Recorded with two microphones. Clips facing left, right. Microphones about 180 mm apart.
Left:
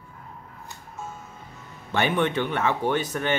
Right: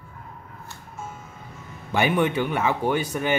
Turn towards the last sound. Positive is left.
turn(degrees=-10)  # may be behind; listen again after turning